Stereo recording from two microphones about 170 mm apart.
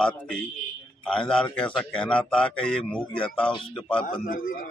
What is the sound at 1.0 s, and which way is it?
A man's voice, 5° left (ahead or behind).